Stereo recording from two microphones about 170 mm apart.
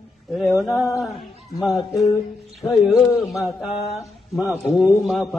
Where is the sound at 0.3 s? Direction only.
5° left (ahead or behind).